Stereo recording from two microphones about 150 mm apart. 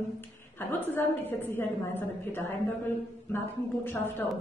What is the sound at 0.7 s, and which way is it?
A woman's voice, 15° left (ahead or behind).